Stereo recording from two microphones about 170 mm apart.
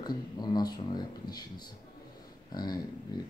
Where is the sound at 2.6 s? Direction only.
25° left (ahead or behind).